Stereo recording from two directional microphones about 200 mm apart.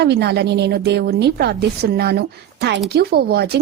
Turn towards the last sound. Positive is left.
turn(degrees=-55)  # may be behind; listen again after turning